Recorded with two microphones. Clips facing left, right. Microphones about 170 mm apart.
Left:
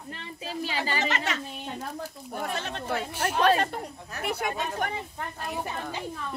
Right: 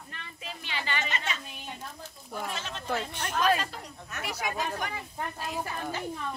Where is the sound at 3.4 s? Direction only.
65° left (ahead or behind).